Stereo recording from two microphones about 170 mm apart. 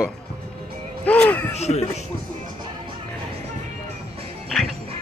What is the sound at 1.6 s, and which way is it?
Speech, 40° left (ahead or behind).